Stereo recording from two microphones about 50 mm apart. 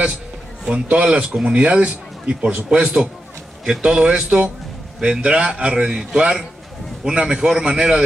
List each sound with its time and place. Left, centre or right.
0.7 s a man's voice: right